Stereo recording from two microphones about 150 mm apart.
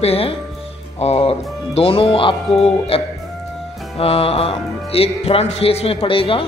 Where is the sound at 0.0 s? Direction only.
40° left (ahead or behind).